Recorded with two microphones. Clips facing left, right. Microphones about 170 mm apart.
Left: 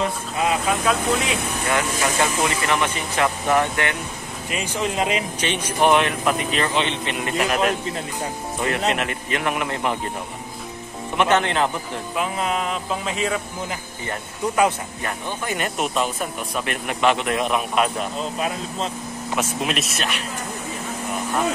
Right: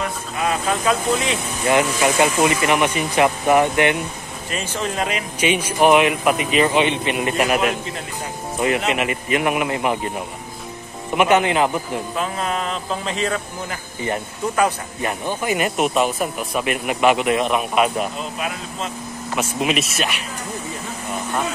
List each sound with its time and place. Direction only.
0.7 s speech: centre (ahead or behind)
1.7 s speech: 20° right (ahead or behind)
4.5 s speech: 15° left (ahead or behind)
5.4 s speech: 10° right (ahead or behind)
11.1 s speech: 10° right (ahead or behind)
12.2 s speech: 10° left (ahead or behind)
15.0 s speech: 10° right (ahead or behind)
19.3 s speech: 5° right (ahead or behind)